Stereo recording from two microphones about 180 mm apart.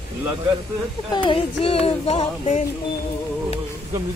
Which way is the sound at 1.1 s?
30° left (ahead or behind).